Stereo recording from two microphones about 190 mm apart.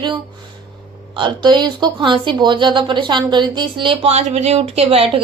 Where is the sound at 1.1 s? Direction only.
25° right (ahead or behind).